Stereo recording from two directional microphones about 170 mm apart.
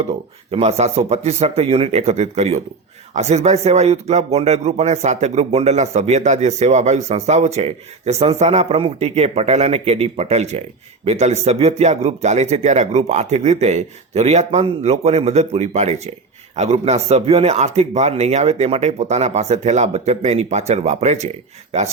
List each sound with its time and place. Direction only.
0.5 s speech: 40° right (ahead or behind)